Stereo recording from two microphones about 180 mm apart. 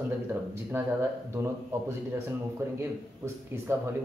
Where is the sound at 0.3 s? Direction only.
10° right (ahead or behind).